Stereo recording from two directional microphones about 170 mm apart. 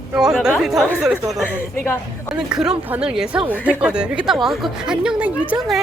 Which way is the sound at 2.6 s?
5° right (ahead or behind).